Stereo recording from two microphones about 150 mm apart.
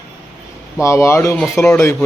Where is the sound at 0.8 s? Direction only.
20° left (ahead or behind).